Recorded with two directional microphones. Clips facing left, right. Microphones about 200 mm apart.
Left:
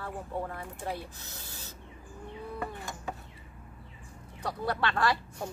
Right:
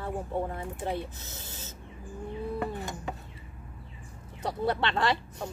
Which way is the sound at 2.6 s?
20° right (ahead or behind).